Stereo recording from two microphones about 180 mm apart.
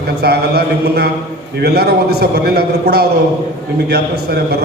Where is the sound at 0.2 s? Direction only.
60° right (ahead or behind).